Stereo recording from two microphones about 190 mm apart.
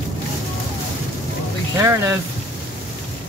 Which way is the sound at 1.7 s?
15° right (ahead or behind).